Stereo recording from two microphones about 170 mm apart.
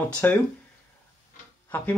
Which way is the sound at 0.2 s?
10° left (ahead or behind).